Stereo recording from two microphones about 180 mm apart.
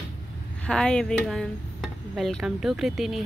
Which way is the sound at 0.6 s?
5° left (ahead or behind).